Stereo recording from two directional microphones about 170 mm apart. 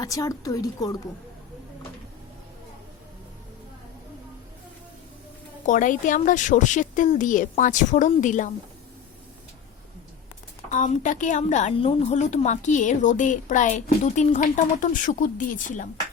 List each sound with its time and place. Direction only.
0.0 s a woman's voice: 20° left (ahead or behind)
5.6 s a woman's voice: 50° left (ahead or behind)
10.7 s a woman's voice: 45° left (ahead or behind)